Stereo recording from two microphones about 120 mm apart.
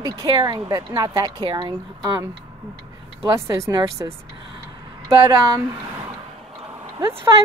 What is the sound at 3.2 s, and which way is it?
Speech, 25° right (ahead or behind).